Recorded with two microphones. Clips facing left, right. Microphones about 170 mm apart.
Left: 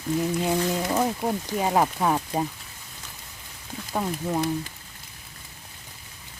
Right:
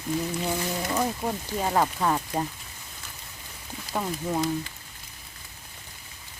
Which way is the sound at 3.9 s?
5° left (ahead or behind).